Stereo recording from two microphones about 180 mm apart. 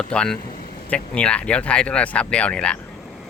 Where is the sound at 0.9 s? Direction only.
5° left (ahead or behind).